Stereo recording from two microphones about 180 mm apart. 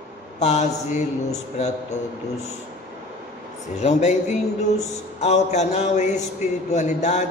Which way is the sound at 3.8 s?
40° left (ahead or behind).